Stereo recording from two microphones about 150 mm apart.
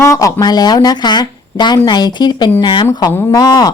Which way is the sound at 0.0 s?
20° left (ahead or behind).